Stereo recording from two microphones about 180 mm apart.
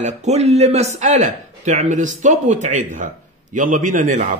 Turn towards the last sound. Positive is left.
turn(degrees=-45)  # may be behind; listen again after turning